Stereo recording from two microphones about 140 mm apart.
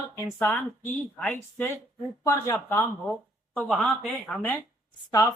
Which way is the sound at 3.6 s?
5° left (ahead or behind).